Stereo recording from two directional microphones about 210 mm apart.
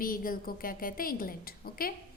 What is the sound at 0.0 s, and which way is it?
A woman's voice, 40° left (ahead or behind).